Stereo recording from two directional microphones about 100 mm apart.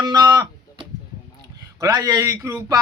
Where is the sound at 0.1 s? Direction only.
45° right (ahead or behind).